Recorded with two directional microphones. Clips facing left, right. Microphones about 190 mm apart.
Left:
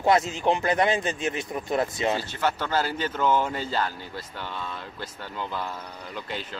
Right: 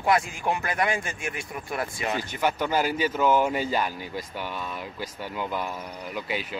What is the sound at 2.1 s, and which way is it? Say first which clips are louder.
Speech: right 1 dB; 15° right (ahead or behind).